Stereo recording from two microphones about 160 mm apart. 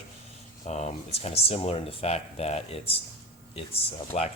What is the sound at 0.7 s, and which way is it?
Speech, 45° left (ahead or behind).